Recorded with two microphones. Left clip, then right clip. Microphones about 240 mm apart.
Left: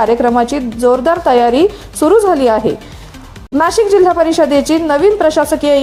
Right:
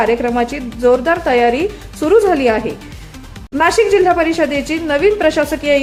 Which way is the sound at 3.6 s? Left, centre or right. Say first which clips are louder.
Left 2 dB; centre.